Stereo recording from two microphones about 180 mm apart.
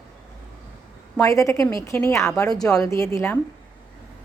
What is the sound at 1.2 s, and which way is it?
A woman's voice, 15° left (ahead or behind).